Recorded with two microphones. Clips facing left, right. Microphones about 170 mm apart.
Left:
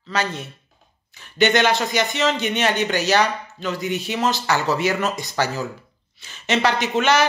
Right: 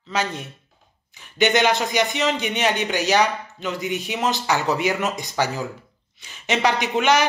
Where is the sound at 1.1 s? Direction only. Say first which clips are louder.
Left 1 dB; 15° right (ahead or behind).